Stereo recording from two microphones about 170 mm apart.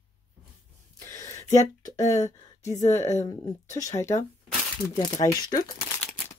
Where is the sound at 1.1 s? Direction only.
15° left (ahead or behind).